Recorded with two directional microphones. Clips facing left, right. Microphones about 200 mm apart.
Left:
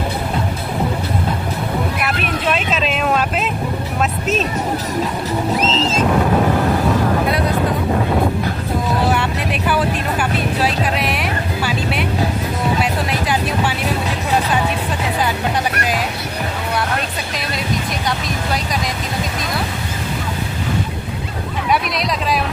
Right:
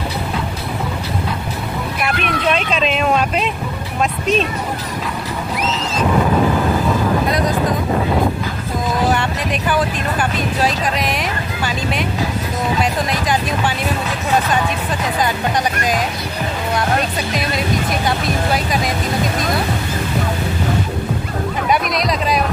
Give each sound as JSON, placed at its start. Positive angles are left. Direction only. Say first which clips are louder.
{"t": 2.0, "sound": "a sound", "louder": "right 1 dB", "side_deg": 5}
{"t": 5.6, "sound": "vehicle", "louder": "left 2 dB", "side_deg": 25}
{"t": 9.1, "sound": "vehicle", "louder": "even", "side_deg": 5}